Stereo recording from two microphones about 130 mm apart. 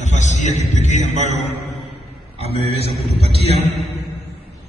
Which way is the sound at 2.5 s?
50° right (ahead or behind).